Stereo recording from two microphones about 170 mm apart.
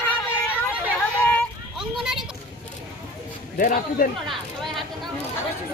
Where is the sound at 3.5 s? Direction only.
55° left (ahead or behind).